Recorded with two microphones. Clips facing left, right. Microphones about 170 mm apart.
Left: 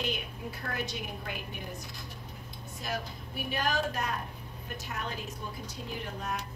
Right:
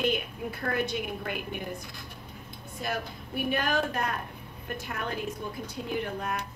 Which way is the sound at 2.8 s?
55° right (ahead or behind).